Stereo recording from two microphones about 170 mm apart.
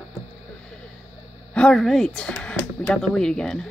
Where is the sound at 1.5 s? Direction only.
5° left (ahead or behind).